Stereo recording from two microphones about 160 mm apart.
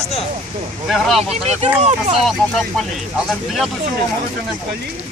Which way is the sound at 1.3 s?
45° right (ahead or behind).